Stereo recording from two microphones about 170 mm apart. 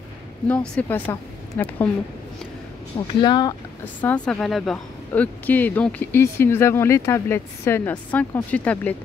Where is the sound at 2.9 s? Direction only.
25° left (ahead or behind).